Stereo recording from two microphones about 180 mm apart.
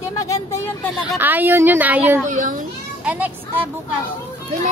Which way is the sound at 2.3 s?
45° right (ahead or behind).